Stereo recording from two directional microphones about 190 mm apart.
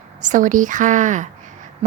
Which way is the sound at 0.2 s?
45° right (ahead or behind).